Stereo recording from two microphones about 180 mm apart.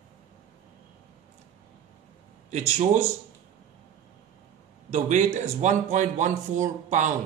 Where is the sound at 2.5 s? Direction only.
40° right (ahead or behind).